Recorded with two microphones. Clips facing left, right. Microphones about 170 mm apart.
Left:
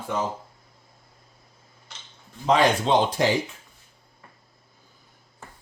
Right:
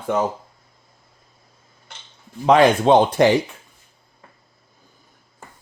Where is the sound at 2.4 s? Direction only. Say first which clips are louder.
Right 6 dB; 55° right (ahead or behind).